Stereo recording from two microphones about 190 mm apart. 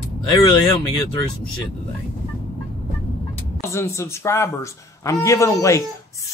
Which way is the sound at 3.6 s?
15° left (ahead or behind).